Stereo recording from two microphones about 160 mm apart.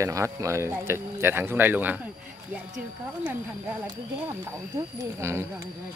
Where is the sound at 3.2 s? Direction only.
10° right (ahead or behind).